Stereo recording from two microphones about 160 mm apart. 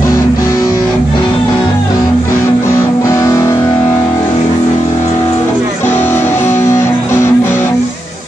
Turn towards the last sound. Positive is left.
turn(degrees=15)  # may be behind; listen again after turning